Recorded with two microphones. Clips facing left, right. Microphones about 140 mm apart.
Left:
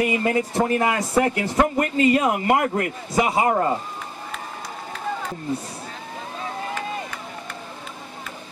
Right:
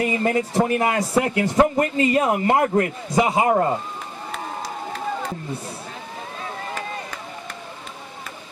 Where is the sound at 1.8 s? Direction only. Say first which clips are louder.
Even; 30° right (ahead or behind).